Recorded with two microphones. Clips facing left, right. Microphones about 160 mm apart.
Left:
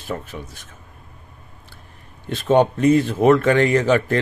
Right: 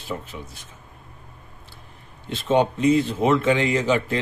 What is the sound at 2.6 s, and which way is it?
A man's voice, 55° left (ahead or behind).